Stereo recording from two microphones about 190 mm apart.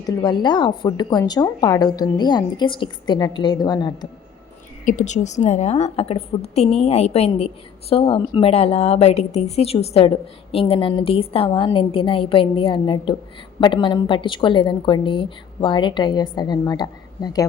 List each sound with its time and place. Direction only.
0.0 s a woman's voice: 20° left (ahead or behind)
4.9 s a woman's voice: 40° left (ahead or behind); by 17.4 s 20° left (ahead or behind)